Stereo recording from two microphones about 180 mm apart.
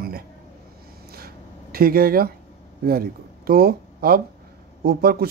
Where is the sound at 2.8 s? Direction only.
55° right (ahead or behind).